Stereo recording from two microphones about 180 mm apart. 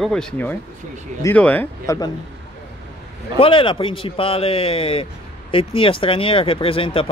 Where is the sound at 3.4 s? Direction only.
30° left (ahead or behind).